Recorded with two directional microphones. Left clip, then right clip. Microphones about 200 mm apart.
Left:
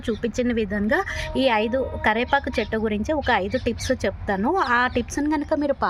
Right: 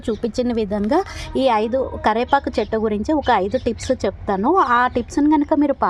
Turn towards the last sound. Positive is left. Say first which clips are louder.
# right 6 dB
turn(degrees=-25)  # may be behind; listen again after turning